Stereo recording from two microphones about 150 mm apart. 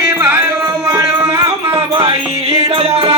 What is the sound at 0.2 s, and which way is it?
Music, 15° right (ahead or behind).